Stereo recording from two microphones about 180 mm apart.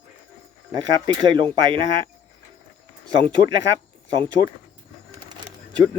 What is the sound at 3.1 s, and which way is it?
Speech, 25° right (ahead or behind).